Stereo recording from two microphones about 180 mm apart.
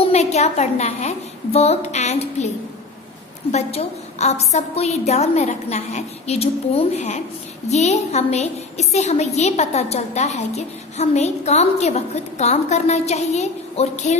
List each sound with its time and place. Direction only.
0.0 s a woman's voice: 35° left (ahead or behind)
3.5 s a woman's voice: 40° left (ahead or behind)